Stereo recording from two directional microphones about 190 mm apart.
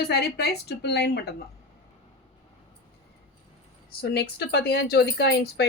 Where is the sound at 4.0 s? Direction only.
60° left (ahead or behind).